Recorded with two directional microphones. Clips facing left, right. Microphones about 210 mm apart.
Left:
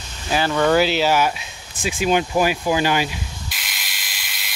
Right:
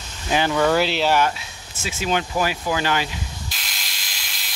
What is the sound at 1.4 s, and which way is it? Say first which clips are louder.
Speech: left 5 dB; 15° left (ahead or behind).